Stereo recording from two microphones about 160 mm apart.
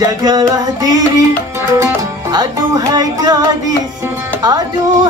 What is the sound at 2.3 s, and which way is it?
Music, 25° right (ahead or behind).